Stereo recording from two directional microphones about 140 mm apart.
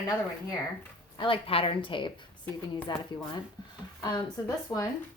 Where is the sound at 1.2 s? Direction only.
40° left (ahead or behind).